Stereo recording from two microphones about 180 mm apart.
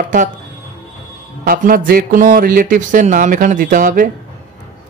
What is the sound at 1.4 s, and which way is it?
A man's voice, 55° right (ahead or behind).